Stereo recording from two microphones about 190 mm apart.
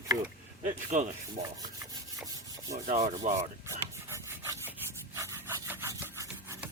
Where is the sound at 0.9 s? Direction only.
40° right (ahead or behind).